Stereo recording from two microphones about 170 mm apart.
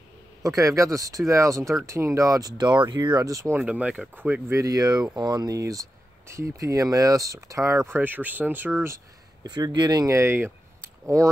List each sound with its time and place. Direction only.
0.4 s speech: 20° right (ahead or behind)